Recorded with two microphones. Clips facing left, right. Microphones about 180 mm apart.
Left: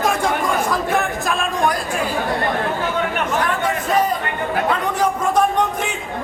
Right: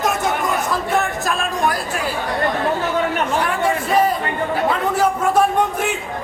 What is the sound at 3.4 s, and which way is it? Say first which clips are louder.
Chatter: right 1 dB; 10° right (ahead or behind).